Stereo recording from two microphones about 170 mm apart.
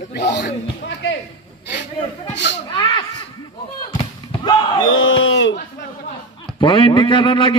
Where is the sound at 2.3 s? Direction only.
90° left.